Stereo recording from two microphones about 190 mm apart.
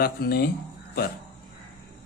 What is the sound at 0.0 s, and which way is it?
Speech, 55° left (ahead or behind).